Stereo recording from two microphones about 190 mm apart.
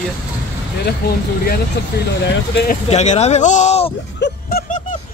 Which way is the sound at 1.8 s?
60° left (ahead or behind).